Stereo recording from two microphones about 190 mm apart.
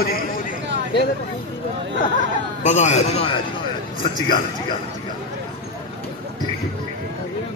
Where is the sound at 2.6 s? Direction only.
35° left (ahead or behind).